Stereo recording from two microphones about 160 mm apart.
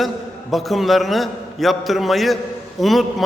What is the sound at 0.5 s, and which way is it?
A man's voice, centre (ahead or behind).